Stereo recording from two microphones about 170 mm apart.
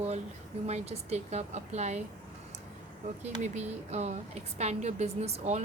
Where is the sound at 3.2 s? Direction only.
40° right (ahead or behind).